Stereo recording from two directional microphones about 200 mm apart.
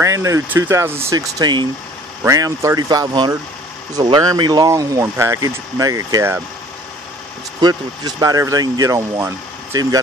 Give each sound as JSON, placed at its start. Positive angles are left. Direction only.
{"t": 0.0, "sound": "speech", "side_deg": -15}
{"t": 7.6, "sound": "speech", "side_deg": -20}